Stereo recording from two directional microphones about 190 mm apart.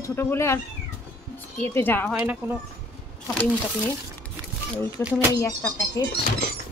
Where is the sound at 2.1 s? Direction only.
5° right (ahead or behind).